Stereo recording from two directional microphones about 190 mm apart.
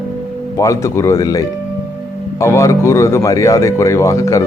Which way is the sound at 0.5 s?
15° left (ahead or behind).